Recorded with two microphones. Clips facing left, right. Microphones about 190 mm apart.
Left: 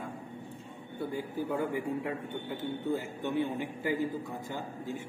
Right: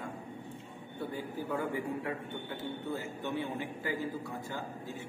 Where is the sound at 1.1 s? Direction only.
15° left (ahead or behind).